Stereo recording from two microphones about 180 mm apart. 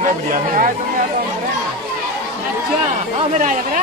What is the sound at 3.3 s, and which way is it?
Speech, 45° right (ahead or behind).